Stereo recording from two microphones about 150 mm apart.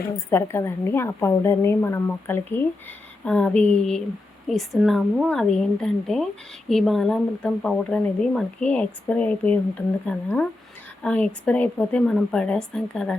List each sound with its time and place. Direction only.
0.3 s a woman's voice: 15° left (ahead or behind)